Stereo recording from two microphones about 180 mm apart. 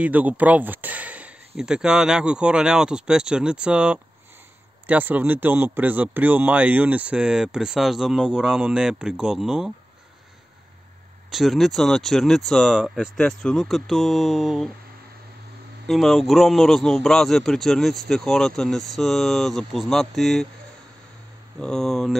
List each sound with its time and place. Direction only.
0.0 s speech: 10° right (ahead or behind)
11.2 s speech: centre (ahead or behind)
15.9 s speech: centre (ahead or behind)
21.5 s speech: 5° left (ahead or behind)